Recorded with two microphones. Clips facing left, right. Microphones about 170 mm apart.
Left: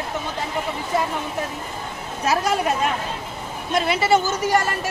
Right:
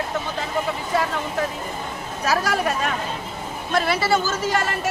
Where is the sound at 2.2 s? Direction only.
20° left (ahead or behind).